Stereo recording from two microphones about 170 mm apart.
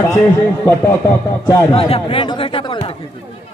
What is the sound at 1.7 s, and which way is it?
Speech, 35° left (ahead or behind).